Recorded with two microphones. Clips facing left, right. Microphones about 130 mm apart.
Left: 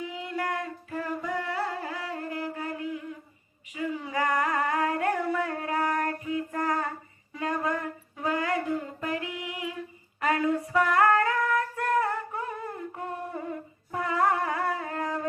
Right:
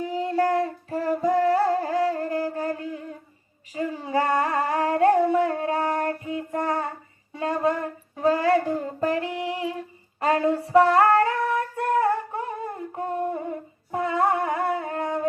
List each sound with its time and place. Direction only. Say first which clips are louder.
0.0 s a sound: right 9 dB; 40° right (ahead or behind)
6.2 s child singing: right 2 dB; 25° right (ahead or behind)
7.3 s music: right 5 dB; 25° right (ahead or behind)
10.2 s female singing: right 4 dB; 30° right (ahead or behind)